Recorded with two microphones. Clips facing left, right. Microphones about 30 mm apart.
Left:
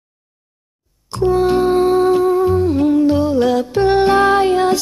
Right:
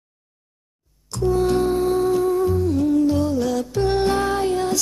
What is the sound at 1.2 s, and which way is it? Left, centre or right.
Music, left.